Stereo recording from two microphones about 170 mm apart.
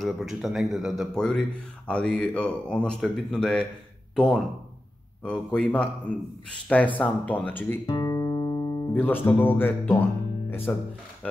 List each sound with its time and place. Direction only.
0.0 s speech: centre (ahead or behind)
7.8 s speech: 25° left (ahead or behind)